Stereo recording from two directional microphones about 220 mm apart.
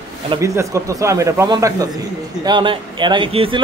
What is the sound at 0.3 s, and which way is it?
A man's voice, 15° right (ahead or behind).